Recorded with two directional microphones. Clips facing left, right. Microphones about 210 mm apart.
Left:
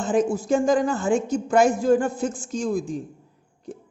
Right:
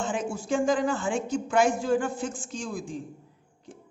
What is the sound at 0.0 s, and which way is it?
A woman's voice, 40° left (ahead or behind).